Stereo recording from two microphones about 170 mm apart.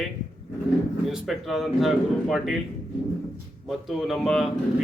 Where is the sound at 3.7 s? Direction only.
Centre (ahead or behind).